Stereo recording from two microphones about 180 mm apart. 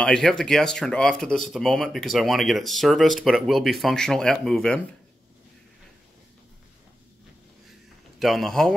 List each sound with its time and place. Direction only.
0.0 s speech: 5° left (ahead or behind)
8.2 s speech: centre (ahead or behind)